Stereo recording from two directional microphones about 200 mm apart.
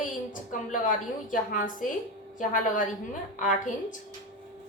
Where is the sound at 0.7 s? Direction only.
40° left (ahead or behind).